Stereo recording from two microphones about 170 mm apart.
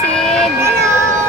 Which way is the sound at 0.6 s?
15° right (ahead or behind).